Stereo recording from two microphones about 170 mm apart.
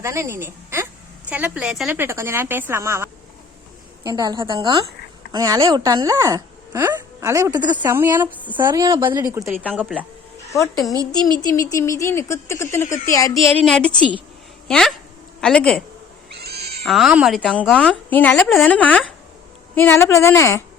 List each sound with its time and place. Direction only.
0.0 s a woman's voice: 15° right (ahead or behind)
2.0 s speech: 15° right (ahead or behind)
7.8 s speech: 15° right (ahead or behind)
8.5 s speech: 25° right (ahead or behind)
9.5 s speech: 10° right (ahead or behind)
10.5 s speech: 20° left (ahead or behind)
13.4 s a woman's voice: 35° right (ahead or behind)
13.7 s a woman's voice: 5° left (ahead or behind)
16.4 s cat: 70° right (ahead or behind)
16.8 s a woman's voice: centre (ahead or behind); by 20.7 s 15° left (ahead or behind)